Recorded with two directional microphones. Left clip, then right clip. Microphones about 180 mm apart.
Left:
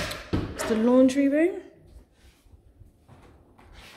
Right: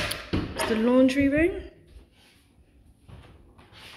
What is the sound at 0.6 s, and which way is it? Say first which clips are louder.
Speech: left 1 dB; 15° left (ahead or behind).